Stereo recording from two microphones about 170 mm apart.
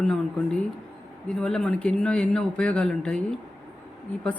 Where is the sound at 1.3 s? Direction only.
5° left (ahead or behind).